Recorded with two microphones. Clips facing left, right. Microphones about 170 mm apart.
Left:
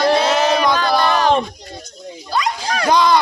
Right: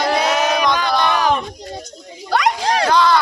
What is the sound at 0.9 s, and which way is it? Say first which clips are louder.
Speech: left 1 dB; 5° left (ahead or behind).